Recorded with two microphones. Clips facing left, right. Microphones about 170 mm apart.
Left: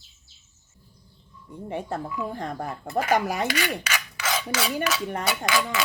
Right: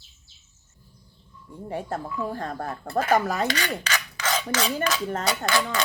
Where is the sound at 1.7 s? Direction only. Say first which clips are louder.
Even; 20° left (ahead or behind).